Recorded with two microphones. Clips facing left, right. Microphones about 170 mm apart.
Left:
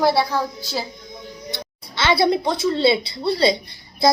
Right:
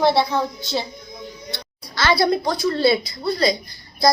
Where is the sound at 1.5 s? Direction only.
20° left (ahead or behind).